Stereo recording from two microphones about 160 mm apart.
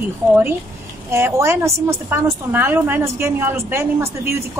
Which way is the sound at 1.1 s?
15° right (ahead or behind).